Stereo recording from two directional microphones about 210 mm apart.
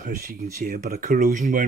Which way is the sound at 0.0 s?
45° right (ahead or behind).